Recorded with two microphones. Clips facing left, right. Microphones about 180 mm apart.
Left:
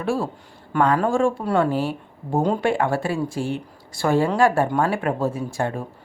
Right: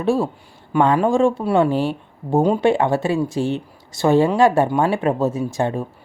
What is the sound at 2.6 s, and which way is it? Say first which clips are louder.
Speech: right 4 dB; 25° right (ahead or behind).